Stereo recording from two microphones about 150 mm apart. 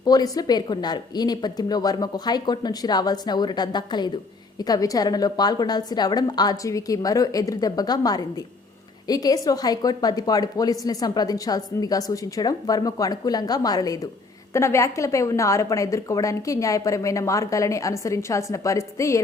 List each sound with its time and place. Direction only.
0.0 s a woman's voice: 25° left (ahead or behind)